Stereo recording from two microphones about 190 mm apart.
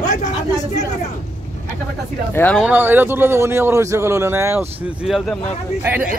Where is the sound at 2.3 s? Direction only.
10° left (ahead or behind).